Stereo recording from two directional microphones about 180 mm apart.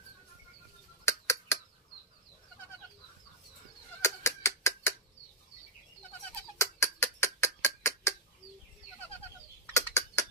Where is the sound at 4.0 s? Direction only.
15° left (ahead or behind).